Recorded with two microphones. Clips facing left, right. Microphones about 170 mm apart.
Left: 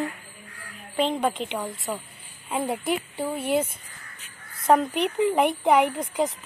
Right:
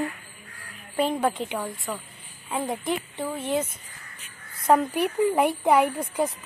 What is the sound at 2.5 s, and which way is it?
Speech, 5° left (ahead or behind).